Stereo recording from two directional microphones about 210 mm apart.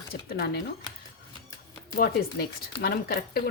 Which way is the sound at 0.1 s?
45° left (ahead or behind).